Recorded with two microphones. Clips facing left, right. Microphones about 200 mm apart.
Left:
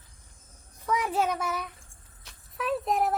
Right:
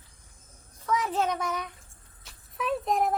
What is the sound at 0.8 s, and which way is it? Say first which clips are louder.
Speech: even; 10° left (ahead or behind).